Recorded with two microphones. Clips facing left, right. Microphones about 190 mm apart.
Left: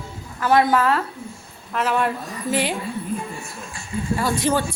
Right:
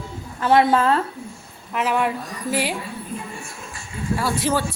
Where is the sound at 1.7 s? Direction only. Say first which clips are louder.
Even; 15° right (ahead or behind).